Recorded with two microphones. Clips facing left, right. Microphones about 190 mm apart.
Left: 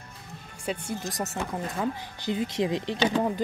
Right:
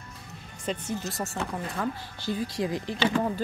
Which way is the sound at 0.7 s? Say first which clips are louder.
Even; 10° left (ahead or behind).